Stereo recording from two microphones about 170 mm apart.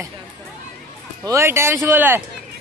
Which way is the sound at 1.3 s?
15° right (ahead or behind).